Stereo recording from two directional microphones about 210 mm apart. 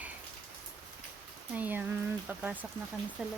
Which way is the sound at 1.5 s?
10° right (ahead or behind).